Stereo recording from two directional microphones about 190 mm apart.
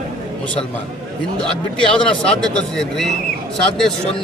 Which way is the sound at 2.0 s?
5° left (ahead or behind).